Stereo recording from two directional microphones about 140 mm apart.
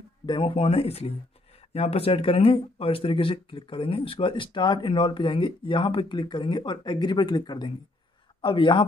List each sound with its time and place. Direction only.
0.3 s a man's voice: 40° left (ahead or behind)